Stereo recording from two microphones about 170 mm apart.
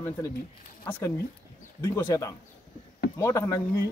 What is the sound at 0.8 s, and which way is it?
A man's voice, 10° left (ahead or behind).